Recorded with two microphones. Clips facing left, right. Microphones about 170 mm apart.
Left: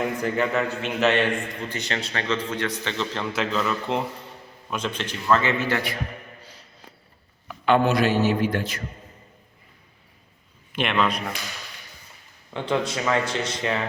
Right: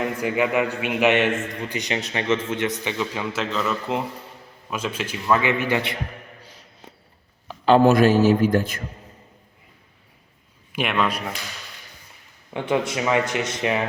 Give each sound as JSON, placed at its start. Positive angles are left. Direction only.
{"t": 0.0, "sound": "a man's voice", "side_deg": -10}
{"t": 7.4, "sound": "a sound", "side_deg": -35}
{"t": 7.9, "sound": "a man's voice", "side_deg": -40}
{"t": 10.7, "sound": "a man's voice", "side_deg": -5}
{"t": 12.5, "sound": "a man's voice", "side_deg": -20}